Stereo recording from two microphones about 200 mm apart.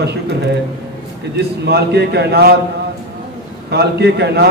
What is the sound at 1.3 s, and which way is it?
A man's voice, 55° right (ahead or behind).